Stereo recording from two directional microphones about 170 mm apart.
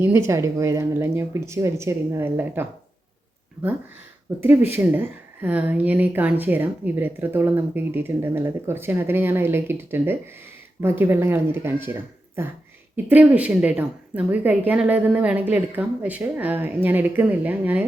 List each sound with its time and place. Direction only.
0.3 s speech: 15° right (ahead or behind)
4.4 s speech: 10° right (ahead or behind)